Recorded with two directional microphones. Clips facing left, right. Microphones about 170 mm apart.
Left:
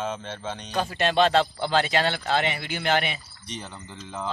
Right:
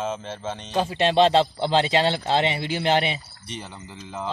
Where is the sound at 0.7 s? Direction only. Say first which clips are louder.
Right 3 dB; 25° right (ahead or behind).